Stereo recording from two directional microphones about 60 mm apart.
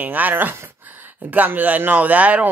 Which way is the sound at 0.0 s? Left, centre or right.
Right.